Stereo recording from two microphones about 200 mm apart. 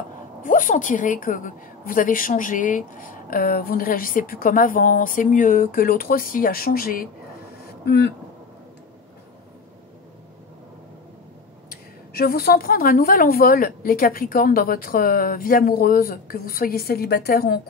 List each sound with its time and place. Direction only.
0.4 s a woman's voice: 40° left (ahead or behind)
11.7 s a woman's voice: 50° left (ahead or behind)